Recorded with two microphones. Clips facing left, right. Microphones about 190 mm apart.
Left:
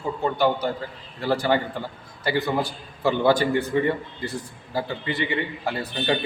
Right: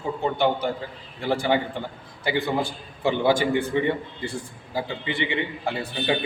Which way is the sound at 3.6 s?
25° right (ahead or behind).